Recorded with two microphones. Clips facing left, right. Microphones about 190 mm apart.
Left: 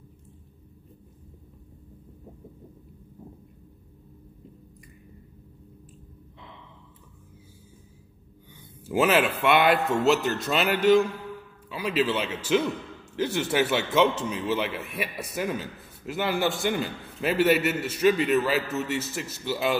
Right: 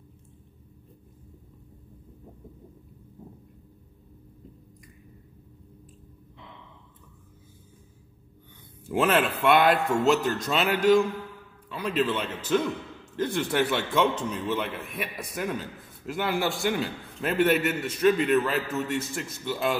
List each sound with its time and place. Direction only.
8.8 s a man's voice: 5° left (ahead or behind)